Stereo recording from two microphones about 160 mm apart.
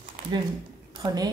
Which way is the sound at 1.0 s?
25° right (ahead or behind).